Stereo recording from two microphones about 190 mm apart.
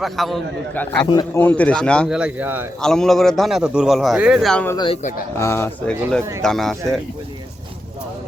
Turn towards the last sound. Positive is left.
turn(degrees=0)  # may be behind; listen again after turning